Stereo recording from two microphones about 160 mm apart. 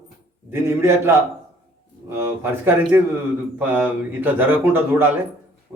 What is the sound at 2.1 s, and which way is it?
A man's voice, 15° right (ahead or behind).